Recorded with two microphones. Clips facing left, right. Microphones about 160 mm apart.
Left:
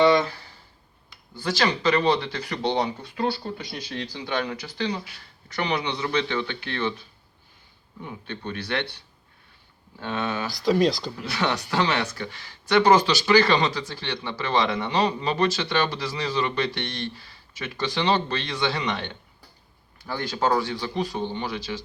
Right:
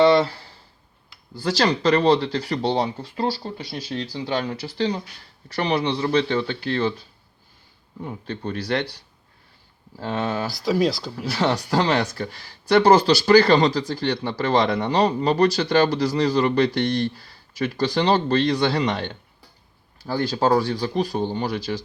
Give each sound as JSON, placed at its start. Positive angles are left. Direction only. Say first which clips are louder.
{"t": 1.4, "sound": "speech", "louder": "right 4 dB", "side_deg": -35}
{"t": 8.0, "sound": "speech", "louder": "right 4 dB", "side_deg": -35}
{"t": 10.0, "sound": "speech", "louder": "right 3 dB", "side_deg": -30}
{"t": 10.5, "sound": "speech", "louder": "left 2 dB", "side_deg": 0}
{"t": 11.2, "sound": "speech", "louder": "right 6 dB", "side_deg": -35}